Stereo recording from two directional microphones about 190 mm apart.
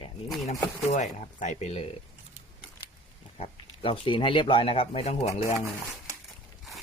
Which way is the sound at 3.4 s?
30° left (ahead or behind).